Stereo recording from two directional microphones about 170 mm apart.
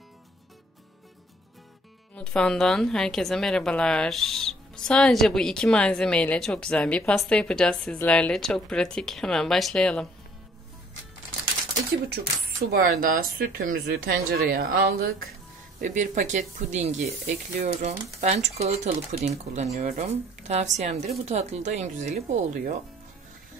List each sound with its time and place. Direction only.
2.1 s a woman's voice: 5° left (ahead or behind)
12.7 s speech: 55° right (ahead or behind)
15.8 s speech: 45° right (ahead or behind)